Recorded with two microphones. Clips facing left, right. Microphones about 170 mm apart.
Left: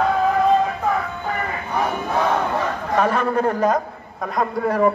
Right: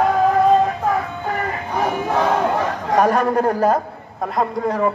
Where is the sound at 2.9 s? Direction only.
40° right (ahead or behind).